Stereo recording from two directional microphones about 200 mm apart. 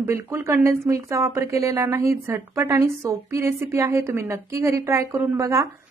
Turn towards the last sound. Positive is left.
turn(degrees=-15)  # may be behind; listen again after turning